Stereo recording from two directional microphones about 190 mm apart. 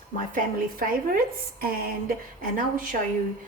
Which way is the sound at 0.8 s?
50° right (ahead or behind).